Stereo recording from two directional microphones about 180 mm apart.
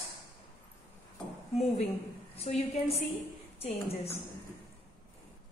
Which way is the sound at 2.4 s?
35° left (ahead or behind).